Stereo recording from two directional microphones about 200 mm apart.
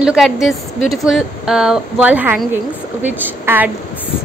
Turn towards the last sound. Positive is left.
turn(degrees=-10)  # may be behind; listen again after turning